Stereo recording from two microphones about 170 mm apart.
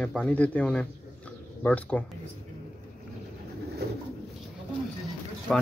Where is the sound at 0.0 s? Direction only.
5° left (ahead or behind).